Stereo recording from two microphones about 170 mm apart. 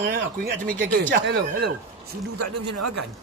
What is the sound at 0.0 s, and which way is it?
Speech, 60° right (ahead or behind).